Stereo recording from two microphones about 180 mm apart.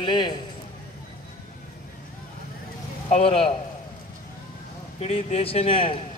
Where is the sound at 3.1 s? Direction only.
35° left (ahead or behind).